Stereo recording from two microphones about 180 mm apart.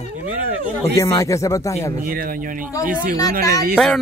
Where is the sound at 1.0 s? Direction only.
15° left (ahead or behind).